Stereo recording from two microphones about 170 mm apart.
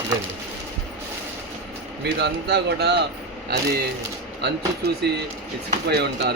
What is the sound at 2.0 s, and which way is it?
Speech, 80° right.